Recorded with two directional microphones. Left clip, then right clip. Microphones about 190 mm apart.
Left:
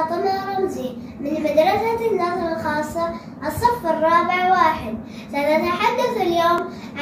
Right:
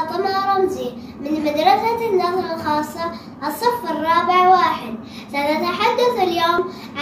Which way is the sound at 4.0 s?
15° left (ahead or behind).